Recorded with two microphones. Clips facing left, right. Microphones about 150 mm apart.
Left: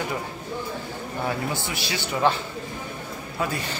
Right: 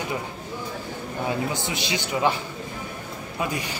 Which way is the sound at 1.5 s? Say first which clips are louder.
Right 1 dB; 20° right (ahead or behind).